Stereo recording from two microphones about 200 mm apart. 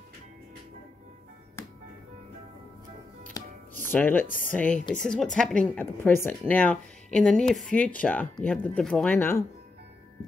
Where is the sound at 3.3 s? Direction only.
15° left (ahead or behind).